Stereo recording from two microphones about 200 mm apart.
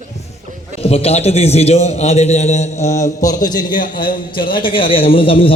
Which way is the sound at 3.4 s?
20° left (ahead or behind).